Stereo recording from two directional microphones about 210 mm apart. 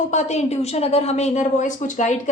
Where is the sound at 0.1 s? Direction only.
35° left (ahead or behind).